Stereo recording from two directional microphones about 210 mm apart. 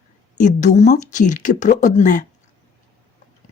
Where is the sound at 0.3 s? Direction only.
35° left (ahead or behind).